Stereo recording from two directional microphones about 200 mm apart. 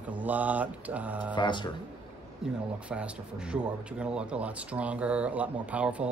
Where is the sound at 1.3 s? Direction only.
25° left (ahead or behind).